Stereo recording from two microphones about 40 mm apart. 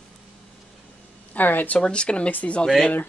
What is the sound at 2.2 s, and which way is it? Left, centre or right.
Speech, left.